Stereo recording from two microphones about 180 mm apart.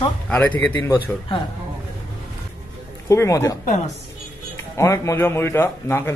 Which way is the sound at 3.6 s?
45° left (ahead or behind).